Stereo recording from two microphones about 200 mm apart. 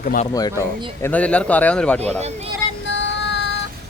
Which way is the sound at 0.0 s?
40° left (ahead or behind).